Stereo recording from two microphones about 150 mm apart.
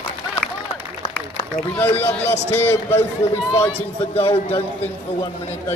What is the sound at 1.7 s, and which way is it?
A man's voice, 10° left (ahead or behind).